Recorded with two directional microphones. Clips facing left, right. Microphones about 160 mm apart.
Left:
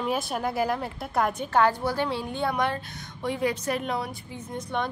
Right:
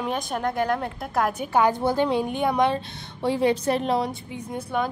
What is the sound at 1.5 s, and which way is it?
A woman's voice, 15° right (ahead or behind).